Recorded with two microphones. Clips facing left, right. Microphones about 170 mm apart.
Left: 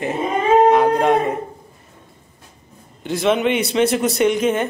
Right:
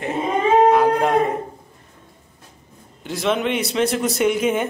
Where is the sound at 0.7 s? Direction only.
Centre (ahead or behind).